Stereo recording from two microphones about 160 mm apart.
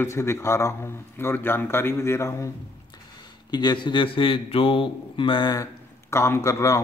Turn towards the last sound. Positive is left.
turn(degrees=20)  # may be behind; listen again after turning